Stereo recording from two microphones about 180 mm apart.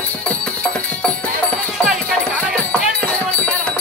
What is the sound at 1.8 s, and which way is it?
Music, centre (ahead or behind).